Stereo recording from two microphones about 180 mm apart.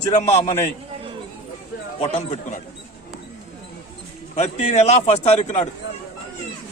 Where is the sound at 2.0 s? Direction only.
40° left (ahead or behind).